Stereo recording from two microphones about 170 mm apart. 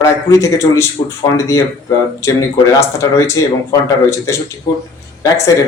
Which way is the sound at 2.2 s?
15° left (ahead or behind).